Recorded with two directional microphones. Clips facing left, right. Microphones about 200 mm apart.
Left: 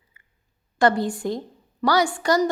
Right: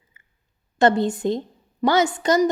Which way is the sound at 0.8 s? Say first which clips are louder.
Right 2 dB; 25° right (ahead or behind).